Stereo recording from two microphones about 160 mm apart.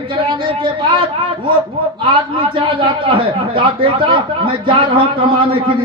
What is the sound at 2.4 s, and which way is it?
A man's voice, 35° right (ahead or behind).